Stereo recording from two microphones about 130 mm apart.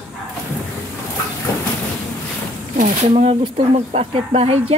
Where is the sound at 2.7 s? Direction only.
85° right.